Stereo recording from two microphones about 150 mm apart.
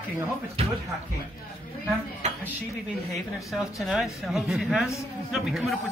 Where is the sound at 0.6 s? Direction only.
40° right (ahead or behind).